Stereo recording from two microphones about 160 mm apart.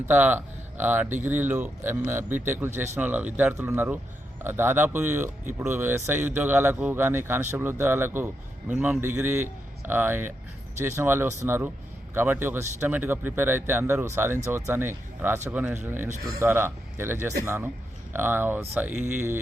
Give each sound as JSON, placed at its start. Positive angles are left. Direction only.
{"t": 0.0, "sound": "speech", "side_deg": -10}